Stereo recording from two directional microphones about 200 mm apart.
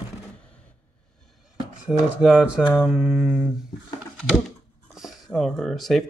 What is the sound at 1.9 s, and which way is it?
Speech, 5° right (ahead or behind).